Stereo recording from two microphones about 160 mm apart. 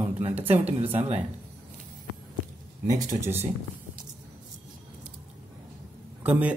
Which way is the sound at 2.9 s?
25° right (ahead or behind).